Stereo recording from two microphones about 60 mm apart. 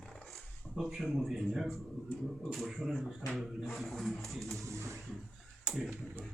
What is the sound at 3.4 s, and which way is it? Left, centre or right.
Speech, centre.